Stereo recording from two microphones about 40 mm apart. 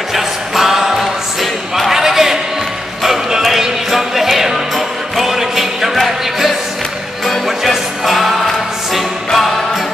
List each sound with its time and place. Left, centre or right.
0.1 s music: centre
1.8 s a sound: centre
3.0 s music: centre